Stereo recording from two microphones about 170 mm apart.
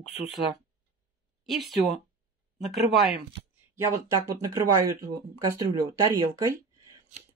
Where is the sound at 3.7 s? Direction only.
15° right (ahead or behind).